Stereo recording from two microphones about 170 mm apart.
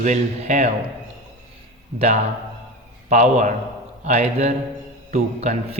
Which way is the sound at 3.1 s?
45° right (ahead or behind).